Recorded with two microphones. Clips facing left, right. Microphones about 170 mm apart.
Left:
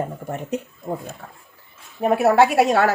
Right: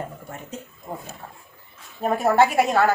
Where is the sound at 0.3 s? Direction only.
65° left (ahead or behind).